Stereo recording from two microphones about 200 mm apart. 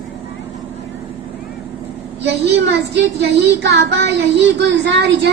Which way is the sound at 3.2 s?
55° right (ahead or behind).